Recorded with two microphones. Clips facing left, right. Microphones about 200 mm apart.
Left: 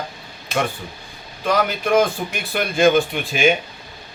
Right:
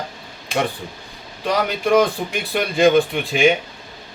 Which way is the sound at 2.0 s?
35° right (ahead or behind).